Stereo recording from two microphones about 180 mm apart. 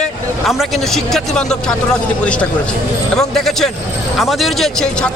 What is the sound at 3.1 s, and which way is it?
A man's voice, centre (ahead or behind).